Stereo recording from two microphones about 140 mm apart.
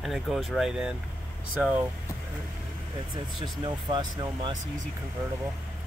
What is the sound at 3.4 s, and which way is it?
Speech, 35° right (ahead or behind).